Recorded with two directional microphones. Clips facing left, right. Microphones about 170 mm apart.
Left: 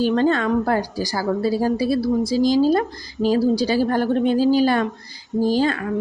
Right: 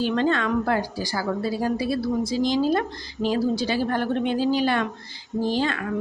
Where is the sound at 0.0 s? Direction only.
40° left (ahead or behind).